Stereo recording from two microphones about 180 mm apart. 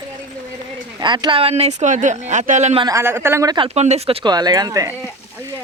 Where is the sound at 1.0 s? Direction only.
25° right (ahead or behind).